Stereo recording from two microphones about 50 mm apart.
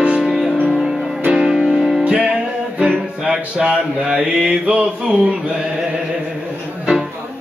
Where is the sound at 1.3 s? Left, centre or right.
Centre.